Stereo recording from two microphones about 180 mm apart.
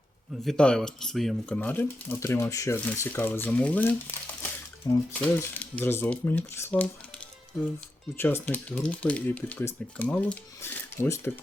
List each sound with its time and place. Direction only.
0.4 s speech: 5° left (ahead or behind)
5.2 s speech: 10° left (ahead or behind)
8.2 s speech: 10° left (ahead or behind)